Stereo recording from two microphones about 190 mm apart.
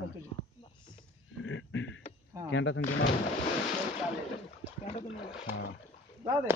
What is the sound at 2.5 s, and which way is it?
Speech, 90° left.